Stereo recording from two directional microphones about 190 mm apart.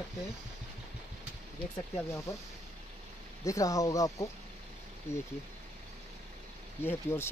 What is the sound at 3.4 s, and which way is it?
Speech, 15° left (ahead or behind).